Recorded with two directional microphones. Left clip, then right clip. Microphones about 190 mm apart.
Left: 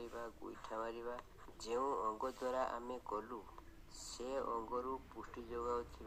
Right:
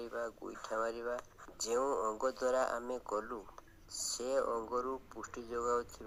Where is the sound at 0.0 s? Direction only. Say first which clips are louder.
Right 7 dB; 20° right (ahead or behind).